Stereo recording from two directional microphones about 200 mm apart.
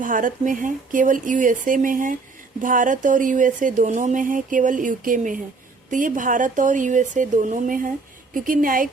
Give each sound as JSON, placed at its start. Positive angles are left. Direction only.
{"t": 0.0, "sound": "speech", "side_deg": -40}